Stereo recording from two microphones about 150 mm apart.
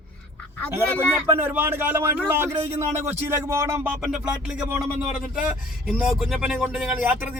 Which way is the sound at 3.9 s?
5° right (ahead or behind).